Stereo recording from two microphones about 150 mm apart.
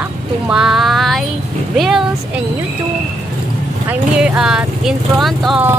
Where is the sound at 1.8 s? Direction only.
Centre (ahead or behind).